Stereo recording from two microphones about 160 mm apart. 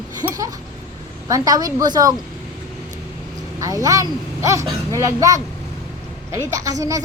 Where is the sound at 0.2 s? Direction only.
25° right (ahead or behind).